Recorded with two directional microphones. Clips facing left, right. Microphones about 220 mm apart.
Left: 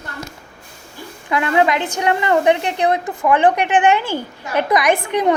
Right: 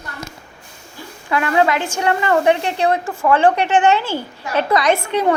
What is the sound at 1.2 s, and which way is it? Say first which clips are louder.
A woman's voice: even; 20° left (ahead or behind).